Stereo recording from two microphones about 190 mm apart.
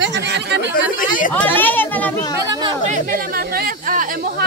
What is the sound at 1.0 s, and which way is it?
Speech, 45° left (ahead or behind).